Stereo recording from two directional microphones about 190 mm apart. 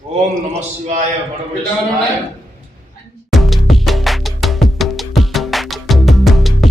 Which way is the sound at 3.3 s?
Centre (ahead or behind).